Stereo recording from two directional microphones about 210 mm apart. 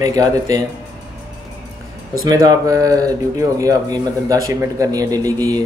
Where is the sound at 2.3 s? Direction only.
15° right (ahead or behind).